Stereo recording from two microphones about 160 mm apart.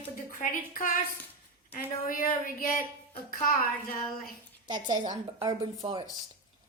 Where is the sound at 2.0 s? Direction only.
60° left (ahead or behind).